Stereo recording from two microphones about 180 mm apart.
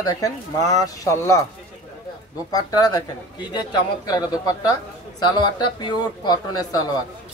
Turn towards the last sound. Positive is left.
turn(degrees=20)  # may be behind; listen again after turning